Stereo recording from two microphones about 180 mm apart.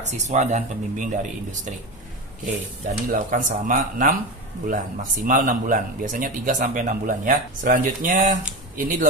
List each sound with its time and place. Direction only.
0.0 s speech: 40° right (ahead or behind)
3.1 s speech: 45° right (ahead or behind)